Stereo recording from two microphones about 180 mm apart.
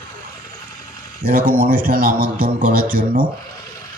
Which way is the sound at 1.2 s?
55° right (ahead or behind).